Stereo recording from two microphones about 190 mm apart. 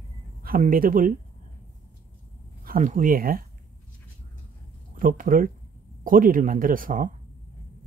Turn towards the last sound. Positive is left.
turn(degrees=-45)  # may be behind; listen again after turning